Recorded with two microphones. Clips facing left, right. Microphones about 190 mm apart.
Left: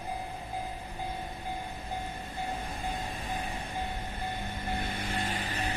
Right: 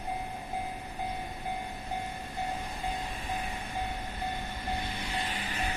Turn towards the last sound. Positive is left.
turn(degrees=40)  # may be behind; listen again after turning